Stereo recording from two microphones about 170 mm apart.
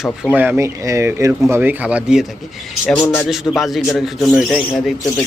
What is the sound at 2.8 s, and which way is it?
Speech, 5° left (ahead or behind).